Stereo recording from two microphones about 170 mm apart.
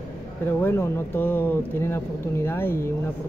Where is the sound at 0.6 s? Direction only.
15° left (ahead or behind).